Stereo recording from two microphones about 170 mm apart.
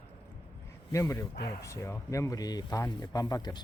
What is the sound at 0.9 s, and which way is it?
Speech, 20° left (ahead or behind).